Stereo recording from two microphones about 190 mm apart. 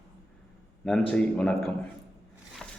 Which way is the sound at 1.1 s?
5° left (ahead or behind).